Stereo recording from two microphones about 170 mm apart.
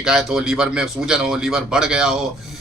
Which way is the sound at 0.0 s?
5° right (ahead or behind).